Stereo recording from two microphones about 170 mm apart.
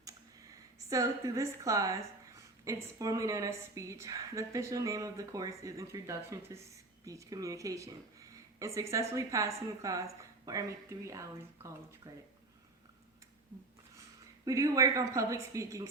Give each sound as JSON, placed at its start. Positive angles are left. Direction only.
{"t": 0.9, "sound": "a woman's voice", "side_deg": -20}
{"t": 14.4, "sound": "a woman's voice", "side_deg": -20}